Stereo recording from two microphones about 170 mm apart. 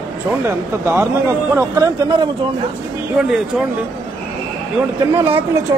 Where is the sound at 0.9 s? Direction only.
15° right (ahead or behind).